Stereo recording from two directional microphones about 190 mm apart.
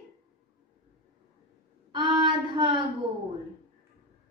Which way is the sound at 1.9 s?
25° right (ahead or behind).